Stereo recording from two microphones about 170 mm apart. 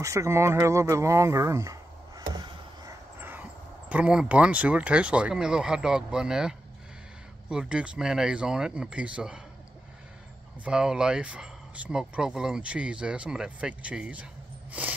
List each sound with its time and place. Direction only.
0.0 s speech: 20° right (ahead or behind)
3.2 s dog: 10° right (ahead or behind)
3.9 s speech: 5° right (ahead or behind)
10.6 s speech: 5° right (ahead or behind)
14.7 s a sound: 10° right (ahead or behind)